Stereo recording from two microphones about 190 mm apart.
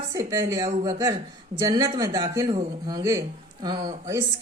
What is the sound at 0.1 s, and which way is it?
Speech, 15° right (ahead or behind).